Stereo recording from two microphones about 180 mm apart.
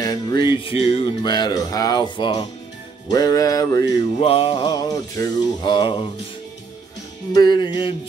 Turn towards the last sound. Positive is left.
turn(degrees=25)  # may be behind; listen again after turning